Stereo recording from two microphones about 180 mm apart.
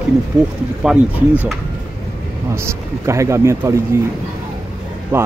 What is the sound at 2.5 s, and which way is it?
Speech, 15° right (ahead or behind).